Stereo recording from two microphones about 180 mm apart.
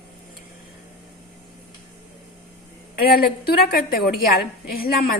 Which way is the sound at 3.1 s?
55° left (ahead or behind).